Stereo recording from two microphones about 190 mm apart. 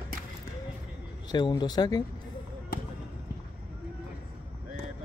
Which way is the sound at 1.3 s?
20° left (ahead or behind).